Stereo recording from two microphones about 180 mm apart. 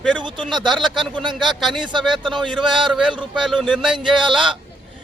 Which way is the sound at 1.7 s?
25° right (ahead or behind).